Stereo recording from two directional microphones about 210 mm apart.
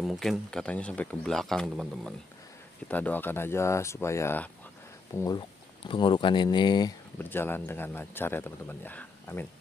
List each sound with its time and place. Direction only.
0.0 s speech: centre (ahead or behind); by 6.9 s 20° left (ahead or behind)
7.2 s speech: 10° left (ahead or behind)